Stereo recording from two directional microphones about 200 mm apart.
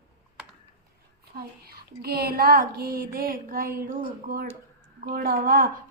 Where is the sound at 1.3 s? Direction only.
50° right (ahead or behind).